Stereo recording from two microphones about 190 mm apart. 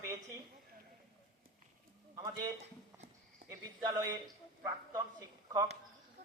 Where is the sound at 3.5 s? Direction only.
20° right (ahead or behind).